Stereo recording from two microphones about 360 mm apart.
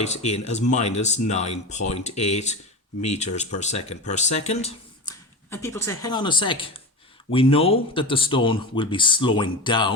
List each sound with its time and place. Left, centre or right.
0.0 s speech: centre
5.5 s speech: centre